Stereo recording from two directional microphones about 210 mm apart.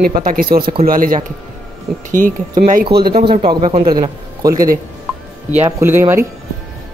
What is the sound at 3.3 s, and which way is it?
A man's voice, 25° right (ahead or behind).